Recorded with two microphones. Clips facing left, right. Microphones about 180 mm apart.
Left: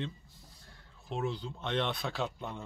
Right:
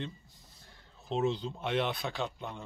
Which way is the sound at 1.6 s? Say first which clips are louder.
Right 1 dB; 5° right (ahead or behind).